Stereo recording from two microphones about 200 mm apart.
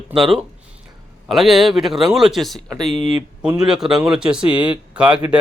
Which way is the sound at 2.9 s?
30° left (ahead or behind).